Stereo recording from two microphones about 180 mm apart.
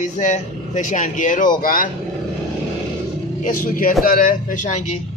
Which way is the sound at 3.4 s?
50° left (ahead or behind).